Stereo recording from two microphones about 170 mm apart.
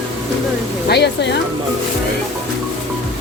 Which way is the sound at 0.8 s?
80° left.